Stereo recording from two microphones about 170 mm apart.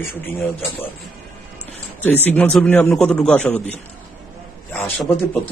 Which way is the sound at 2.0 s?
10° left (ahead or behind).